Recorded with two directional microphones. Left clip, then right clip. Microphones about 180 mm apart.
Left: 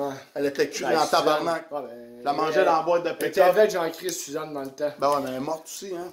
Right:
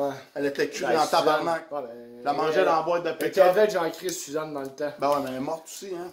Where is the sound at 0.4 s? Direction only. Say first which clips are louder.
Left 2 dB; 15° left (ahead or behind).